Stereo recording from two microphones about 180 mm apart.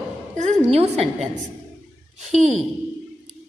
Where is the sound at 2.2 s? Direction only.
40° right (ahead or behind).